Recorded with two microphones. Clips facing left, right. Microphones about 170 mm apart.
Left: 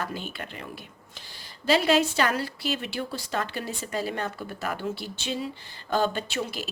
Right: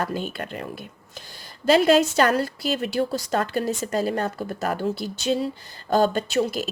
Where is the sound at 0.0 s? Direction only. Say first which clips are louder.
Right 6 dB; 45° right (ahead or behind).